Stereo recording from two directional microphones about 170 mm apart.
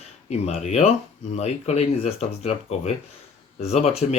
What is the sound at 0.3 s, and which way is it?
Speech, 40° left (ahead or behind).